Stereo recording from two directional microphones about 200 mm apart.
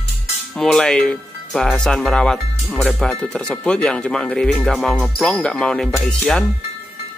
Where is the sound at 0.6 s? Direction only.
5° left (ahead or behind).